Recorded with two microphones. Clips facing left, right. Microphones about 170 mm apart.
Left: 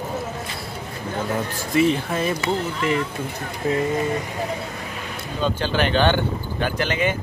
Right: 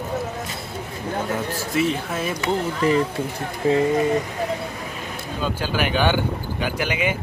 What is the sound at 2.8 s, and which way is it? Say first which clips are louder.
Speech: right 7 dB; 35° right (ahead or behind).